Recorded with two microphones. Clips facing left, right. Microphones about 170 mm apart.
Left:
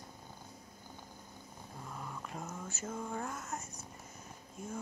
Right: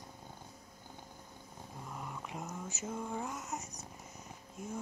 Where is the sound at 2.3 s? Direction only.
15° right (ahead or behind).